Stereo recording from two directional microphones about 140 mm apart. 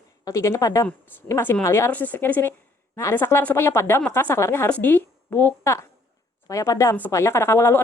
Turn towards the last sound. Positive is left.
turn(degrees=20)  # may be behind; listen again after turning